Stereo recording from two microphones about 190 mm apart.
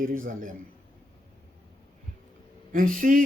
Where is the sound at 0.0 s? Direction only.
45° right (ahead or behind).